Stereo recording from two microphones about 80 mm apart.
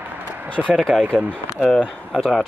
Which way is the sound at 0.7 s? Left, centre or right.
Centre.